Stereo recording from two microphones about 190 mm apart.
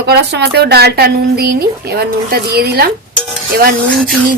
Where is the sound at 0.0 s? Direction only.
60° right (ahead or behind).